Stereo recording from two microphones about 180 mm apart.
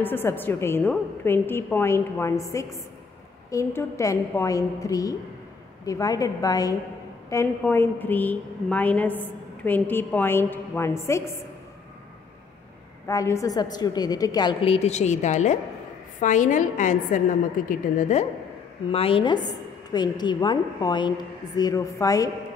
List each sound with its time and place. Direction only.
0.0 s a woman's voice: 10° left (ahead or behind)
13.0 s a woman's voice: 15° left (ahead or behind); by 18.2 s 45° left (ahead or behind)
18.9 s a woman's voice: 30° left (ahead or behind)